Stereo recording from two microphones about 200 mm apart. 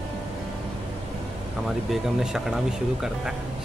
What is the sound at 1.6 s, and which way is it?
Speech, centre (ahead or behind).